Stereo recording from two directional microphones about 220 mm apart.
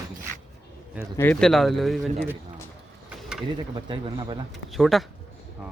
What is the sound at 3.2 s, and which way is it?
Mechanisms, centre (ahead or behind).